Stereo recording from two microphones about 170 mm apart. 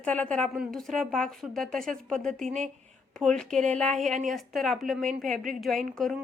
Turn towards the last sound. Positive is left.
turn(degrees=0)  # may be behind; listen again after turning